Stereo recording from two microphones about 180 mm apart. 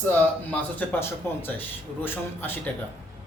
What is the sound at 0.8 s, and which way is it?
Speech, 10° left (ahead or behind).